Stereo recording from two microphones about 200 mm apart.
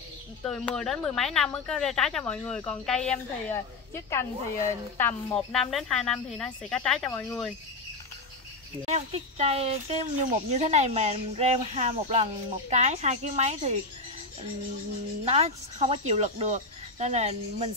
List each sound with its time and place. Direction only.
0.4 s speech: 5° left (ahead or behind)
8.8 s speech: 30° right (ahead or behind)
15.2 s speech: 30° right (ahead or behind)